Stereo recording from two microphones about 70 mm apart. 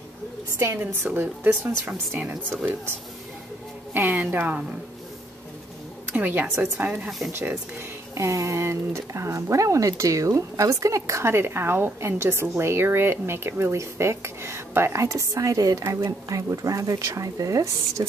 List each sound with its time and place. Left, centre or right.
0.6 s a woman's voice: right
1.6 s speech: centre
3.9 s speech: right
6.1 s a woman's voice: right
8.1 s speech: right